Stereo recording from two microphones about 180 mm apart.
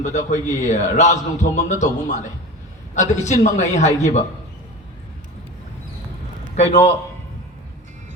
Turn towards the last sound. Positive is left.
turn(degrees=40)  # may be behind; listen again after turning